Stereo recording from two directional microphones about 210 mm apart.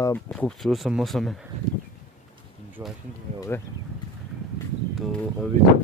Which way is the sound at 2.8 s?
10° right (ahead or behind).